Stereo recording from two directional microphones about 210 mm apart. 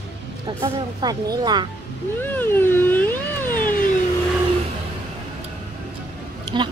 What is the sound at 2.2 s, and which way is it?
Cat, 10° left (ahead or behind).